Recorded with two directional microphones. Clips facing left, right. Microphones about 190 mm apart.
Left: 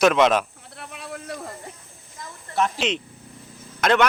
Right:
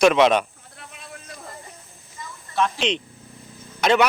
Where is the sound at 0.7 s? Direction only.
65° left (ahead or behind).